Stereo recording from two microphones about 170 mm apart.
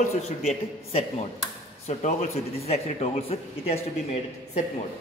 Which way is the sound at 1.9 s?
40° left (ahead or behind).